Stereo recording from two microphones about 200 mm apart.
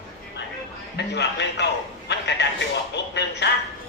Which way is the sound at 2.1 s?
60° left (ahead or behind).